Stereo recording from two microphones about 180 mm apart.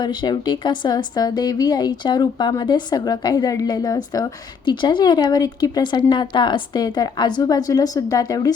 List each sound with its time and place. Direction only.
0.0 s speech: 25° left (ahead or behind)